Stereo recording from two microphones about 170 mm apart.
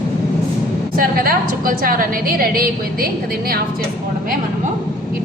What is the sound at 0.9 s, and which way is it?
A woman's voice, 60° right (ahead or behind).